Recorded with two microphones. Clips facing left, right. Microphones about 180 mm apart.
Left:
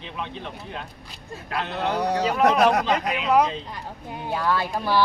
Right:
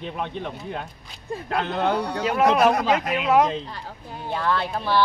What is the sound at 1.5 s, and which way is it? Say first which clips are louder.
Speech: right 3 dB; 50° right (ahead or behind).